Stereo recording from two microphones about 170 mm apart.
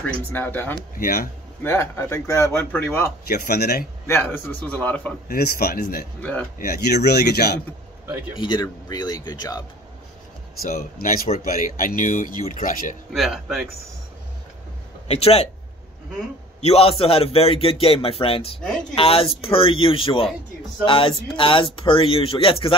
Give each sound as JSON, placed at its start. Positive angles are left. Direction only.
{"t": 0.0, "sound": "a man's voice", "side_deg": 10}
{"t": 0.9, "sound": "speech", "side_deg": 55}
{"t": 1.6, "sound": "a man's voice", "side_deg": 15}
{"t": 3.3, "sound": "speech", "side_deg": 65}
{"t": 4.1, "sound": "a man's voice", "side_deg": 10}
{"t": 5.3, "sound": "speech", "side_deg": 65}
{"t": 8.4, "sound": "a man's voice", "side_deg": 25}
{"t": 10.6, "sound": "speech", "side_deg": 60}
{"t": 13.1, "sound": "speech", "side_deg": 0}
{"t": 15.0, "sound": "speech", "side_deg": 35}
{"t": 16.6, "sound": "speech", "side_deg": 35}